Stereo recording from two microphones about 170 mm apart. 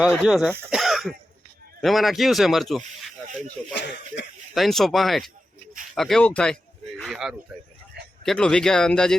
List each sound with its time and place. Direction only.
0.0 s speech: centre (ahead or behind)
0.7 s throat clearing: centre (ahead or behind)
1.8 s speech: centre (ahead or behind)
3.8 s a sound: 90° left
4.5 s speech: centre (ahead or behind)
5.9 s a sound: centre (ahead or behind)
8.2 s speech: 5° left (ahead or behind)